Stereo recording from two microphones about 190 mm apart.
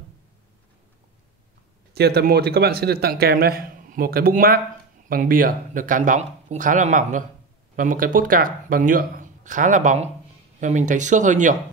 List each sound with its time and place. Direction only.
2.0 s speech: 55° right (ahead or behind); by 11.5 s 40° right (ahead or behind)